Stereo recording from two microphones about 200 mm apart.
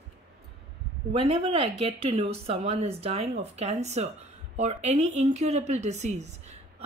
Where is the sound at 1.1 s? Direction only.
30° right (ahead or behind).